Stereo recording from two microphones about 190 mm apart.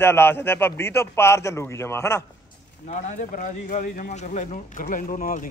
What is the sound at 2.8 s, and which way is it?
Speech, 40° left (ahead or behind).